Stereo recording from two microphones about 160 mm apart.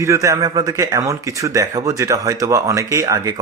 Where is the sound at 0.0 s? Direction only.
20° right (ahead or behind).